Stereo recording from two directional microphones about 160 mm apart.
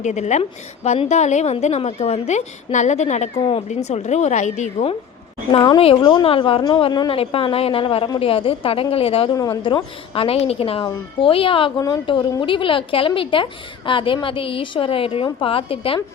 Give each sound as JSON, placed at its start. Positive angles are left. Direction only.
{"t": 0.0, "sound": "a woman's voice", "side_deg": 45}
{"t": 5.5, "sound": "a woman's voice", "side_deg": 30}
{"t": 9.3, "sound": "a woman's voice", "side_deg": 20}